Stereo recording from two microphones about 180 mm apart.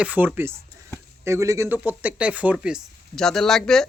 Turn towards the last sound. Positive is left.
turn(degrees=5)  # may be behind; listen again after turning